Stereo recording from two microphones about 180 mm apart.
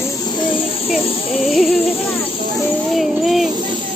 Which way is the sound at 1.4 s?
Centre (ahead or behind).